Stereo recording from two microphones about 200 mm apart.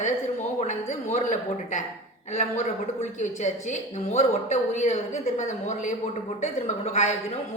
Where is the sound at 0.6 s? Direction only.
35° left (ahead or behind).